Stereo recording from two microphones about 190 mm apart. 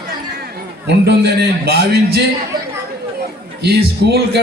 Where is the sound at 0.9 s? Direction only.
65° right (ahead or behind).